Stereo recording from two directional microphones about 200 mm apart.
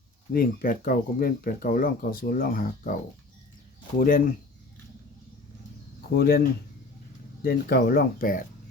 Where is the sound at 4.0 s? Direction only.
45° left (ahead or behind).